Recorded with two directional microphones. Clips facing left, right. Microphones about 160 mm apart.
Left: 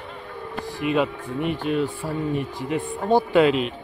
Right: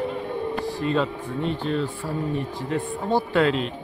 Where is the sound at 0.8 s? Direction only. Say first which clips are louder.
Left 3 dB; 15° left (ahead or behind).